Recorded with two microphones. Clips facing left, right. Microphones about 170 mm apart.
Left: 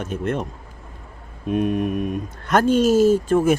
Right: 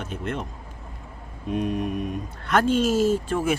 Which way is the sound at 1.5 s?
55° left (ahead or behind).